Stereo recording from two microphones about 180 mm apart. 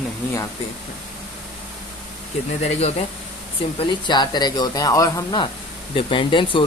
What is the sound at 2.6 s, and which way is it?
Speech, 35° left (ahead or behind).